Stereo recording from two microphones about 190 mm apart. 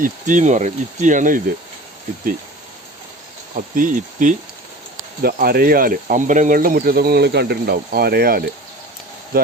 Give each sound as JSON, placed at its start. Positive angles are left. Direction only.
{"t": 0.0, "sound": "speech", "side_deg": -40}
{"t": 3.5, "sound": "speech", "side_deg": -45}
{"t": 5.2, "sound": "speech", "side_deg": -55}